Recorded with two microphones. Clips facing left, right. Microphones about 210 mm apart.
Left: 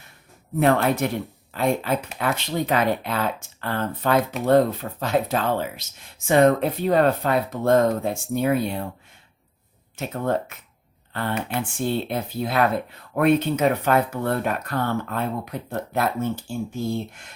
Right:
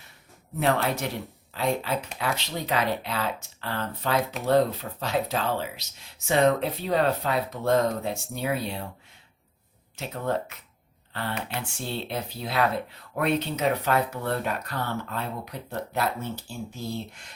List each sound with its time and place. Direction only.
0.6 s speech: 50° left (ahead or behind)
9.9 s speech: 50° left (ahead or behind)